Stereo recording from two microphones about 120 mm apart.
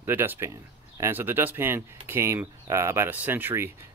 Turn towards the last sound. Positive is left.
turn(degrees=-20)  # may be behind; listen again after turning